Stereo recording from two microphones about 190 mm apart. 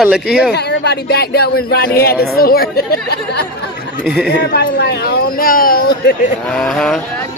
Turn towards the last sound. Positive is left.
turn(degrees=5)  # may be behind; listen again after turning